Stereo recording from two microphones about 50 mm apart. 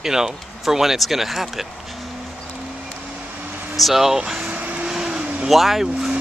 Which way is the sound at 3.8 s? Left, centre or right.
Centre.